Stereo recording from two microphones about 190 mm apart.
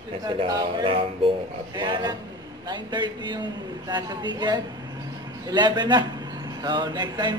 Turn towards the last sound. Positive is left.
turn(degrees=-20)  # may be behind; listen again after turning